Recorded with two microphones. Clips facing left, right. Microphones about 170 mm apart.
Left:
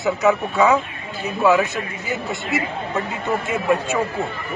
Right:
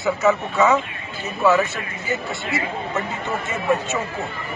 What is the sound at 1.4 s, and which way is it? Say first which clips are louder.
Speech: left 1 dB; 15° left (ahead or behind).